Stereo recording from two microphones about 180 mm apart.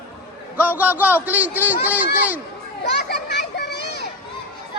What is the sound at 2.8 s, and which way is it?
Children playing, 70° left (ahead or behind).